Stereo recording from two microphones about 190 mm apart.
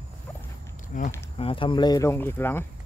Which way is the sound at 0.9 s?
45° left (ahead or behind).